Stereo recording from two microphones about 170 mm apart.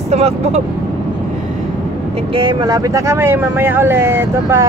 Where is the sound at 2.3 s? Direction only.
25° right (ahead or behind).